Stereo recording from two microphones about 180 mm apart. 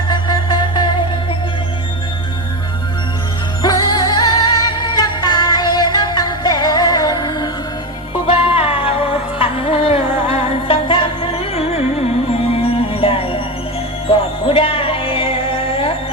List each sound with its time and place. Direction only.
0.1 s music: 25° left (ahead or behind)
3.6 s music: 20° left (ahead or behind)